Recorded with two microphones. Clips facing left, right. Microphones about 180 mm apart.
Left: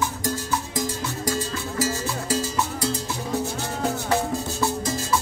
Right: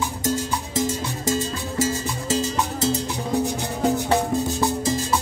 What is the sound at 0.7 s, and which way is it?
Music, 25° right (ahead or behind).